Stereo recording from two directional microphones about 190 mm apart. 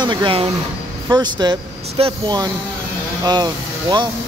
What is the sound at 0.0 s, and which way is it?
Speech, 25° right (ahead or behind).